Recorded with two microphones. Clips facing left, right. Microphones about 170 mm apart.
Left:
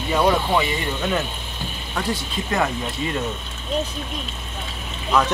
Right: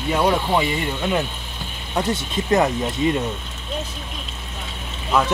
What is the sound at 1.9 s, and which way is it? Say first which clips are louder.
Speech: right 4 dB; 20° right (ahead or behind).